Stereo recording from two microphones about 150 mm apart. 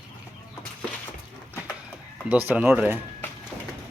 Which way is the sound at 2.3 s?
10° right (ahead or behind).